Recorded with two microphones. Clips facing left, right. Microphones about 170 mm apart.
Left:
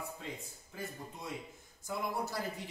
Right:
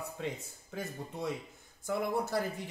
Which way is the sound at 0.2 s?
80° right.